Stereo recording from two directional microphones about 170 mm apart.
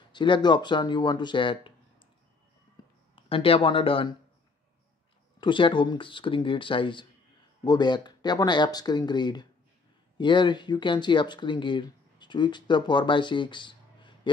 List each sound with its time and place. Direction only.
0.1 s speech: 25° left (ahead or behind)
3.2 s speech: 35° left (ahead or behind)
5.4 s speech: 30° left (ahead or behind)